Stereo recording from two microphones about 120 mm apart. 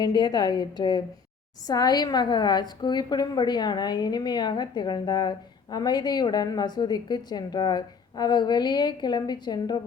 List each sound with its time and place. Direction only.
0.0 s a woman's voice: 35° left (ahead or behind)